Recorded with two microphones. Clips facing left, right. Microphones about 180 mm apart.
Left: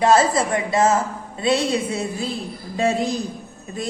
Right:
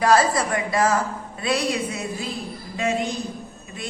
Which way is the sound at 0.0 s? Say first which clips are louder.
Left 2 dB; 25° left (ahead or behind).